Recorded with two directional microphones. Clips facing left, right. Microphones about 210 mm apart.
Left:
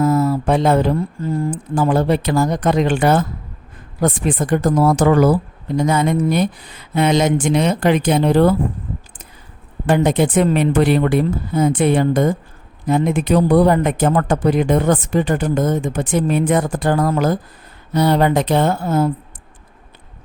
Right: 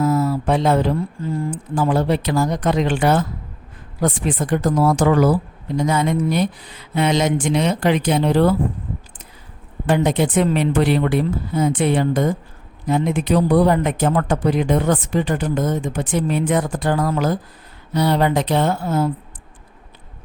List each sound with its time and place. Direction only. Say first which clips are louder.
0.0 s mantra: left 2 dB; 50° left (ahead or behind)
1.5 s a woman's voice: left 2 dB; 50° left (ahead or behind)
9.8 s a woman's voice: left 2 dB; 50° left (ahead or behind)